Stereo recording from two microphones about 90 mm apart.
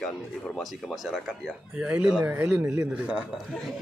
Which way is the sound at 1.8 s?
15° right (ahead or behind).